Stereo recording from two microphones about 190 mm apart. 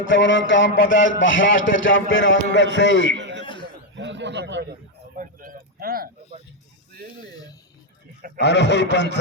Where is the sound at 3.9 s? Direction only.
70° right (ahead or behind).